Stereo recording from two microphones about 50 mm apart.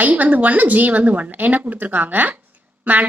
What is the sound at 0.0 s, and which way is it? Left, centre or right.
A woman's voice, right.